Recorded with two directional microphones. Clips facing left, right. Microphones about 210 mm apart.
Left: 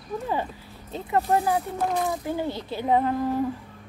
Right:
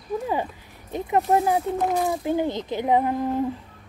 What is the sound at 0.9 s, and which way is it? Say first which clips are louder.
Speech: right 3 dB; 15° right (ahead or behind).